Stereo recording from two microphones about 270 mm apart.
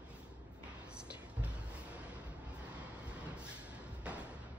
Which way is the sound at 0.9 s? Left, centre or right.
Centre.